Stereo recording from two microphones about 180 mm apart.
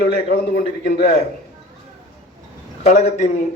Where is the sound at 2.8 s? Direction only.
40° left (ahead or behind).